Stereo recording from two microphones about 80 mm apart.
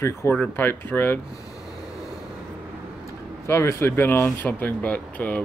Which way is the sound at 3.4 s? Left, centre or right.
Left.